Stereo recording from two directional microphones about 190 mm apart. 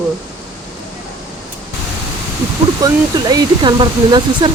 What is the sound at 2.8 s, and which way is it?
Speech, 20° right (ahead or behind).